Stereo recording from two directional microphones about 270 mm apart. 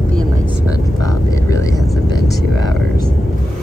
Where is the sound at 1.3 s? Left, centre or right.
Centre.